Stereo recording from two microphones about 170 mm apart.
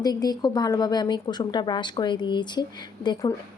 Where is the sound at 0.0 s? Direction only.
25° left (ahead or behind).